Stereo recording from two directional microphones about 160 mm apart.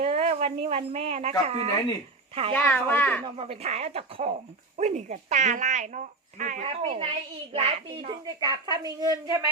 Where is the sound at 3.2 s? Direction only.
35° right (ahead or behind); by 6.6 s 55° right (ahead or behind).